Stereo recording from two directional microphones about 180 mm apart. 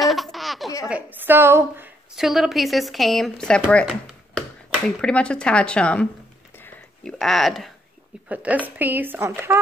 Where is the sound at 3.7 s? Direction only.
5° left (ahead or behind).